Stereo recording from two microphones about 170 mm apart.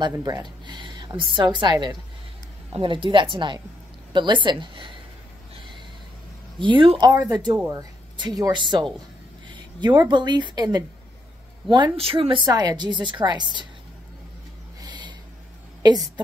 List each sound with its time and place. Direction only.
0.0 s a woman's voice: 25° right (ahead or behind)
6.6 s a woman's voice: 30° right (ahead or behind); by 7.8 s 10° right (ahead or behind)
8.2 s a woman's voice: 25° right (ahead or behind)
14.8 s a sound: 25° right (ahead or behind)